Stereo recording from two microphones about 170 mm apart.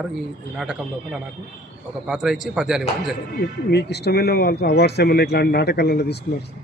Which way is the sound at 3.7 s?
75° left (ahead or behind).